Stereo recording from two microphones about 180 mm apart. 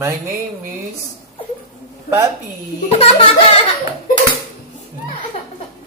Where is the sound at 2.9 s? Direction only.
30° left (ahead or behind).